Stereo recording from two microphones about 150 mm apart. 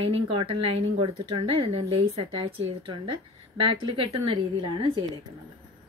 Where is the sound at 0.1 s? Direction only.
35° right (ahead or behind).